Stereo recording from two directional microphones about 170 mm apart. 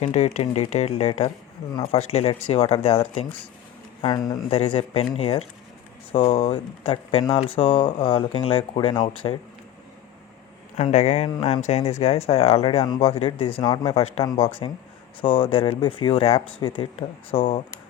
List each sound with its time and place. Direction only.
0.0 s speech: 40° left (ahead or behind)
4.0 s speech: 25° left (ahead or behind)
4.5 s speech: 35° left (ahead or behind)
10.8 s speech: 40° left (ahead or behind)